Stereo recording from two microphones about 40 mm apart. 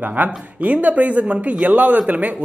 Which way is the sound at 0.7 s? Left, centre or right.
Right.